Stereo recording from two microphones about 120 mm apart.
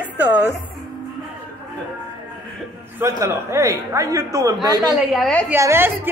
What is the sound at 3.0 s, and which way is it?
A woman's voice, 20° right (ahead or behind).